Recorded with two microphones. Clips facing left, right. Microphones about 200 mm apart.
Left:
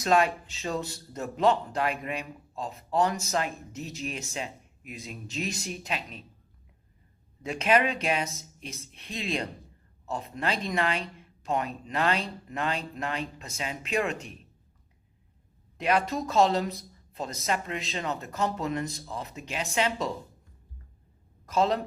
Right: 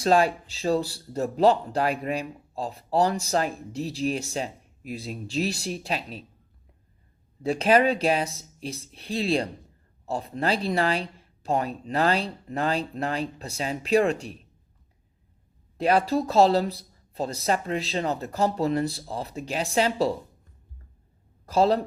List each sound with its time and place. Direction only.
0.0 s speech: 35° right (ahead or behind)
7.4 s speech: 35° right (ahead or behind)
15.8 s speech: 35° right (ahead or behind)
21.4 s speech: 35° right (ahead or behind)